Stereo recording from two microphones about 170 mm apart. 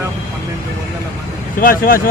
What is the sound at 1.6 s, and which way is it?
Speech, 60° left (ahead or behind).